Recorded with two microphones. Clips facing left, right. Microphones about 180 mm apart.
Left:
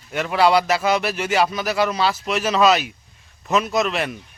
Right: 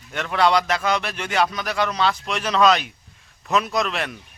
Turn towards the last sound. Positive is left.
turn(degrees=5)  # may be behind; listen again after turning